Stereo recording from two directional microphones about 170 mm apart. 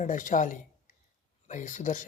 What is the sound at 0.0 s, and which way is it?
Speech, 50° left (ahead or behind).